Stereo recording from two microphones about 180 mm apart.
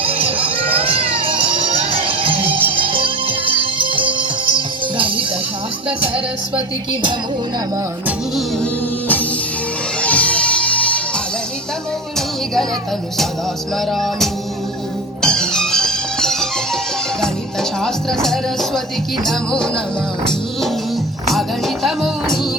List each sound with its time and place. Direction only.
0.0 s music: 30° right (ahead or behind)
10.0 s music: 5° left (ahead or behind)
13.9 s music: centre (ahead or behind)
21.8 s music: centre (ahead or behind)